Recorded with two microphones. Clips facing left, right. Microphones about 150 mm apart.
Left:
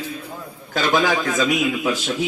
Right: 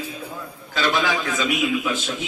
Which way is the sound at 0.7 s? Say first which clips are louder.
Left 3 dB; 45° left (ahead or behind).